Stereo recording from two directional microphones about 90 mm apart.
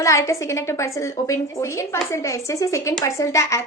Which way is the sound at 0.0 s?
35° left (ahead or behind).